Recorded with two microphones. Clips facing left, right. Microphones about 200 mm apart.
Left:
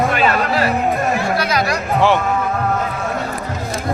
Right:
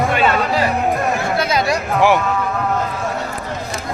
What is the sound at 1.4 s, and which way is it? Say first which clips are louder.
Chatter: right 1 dB; 25° right (ahead or behind).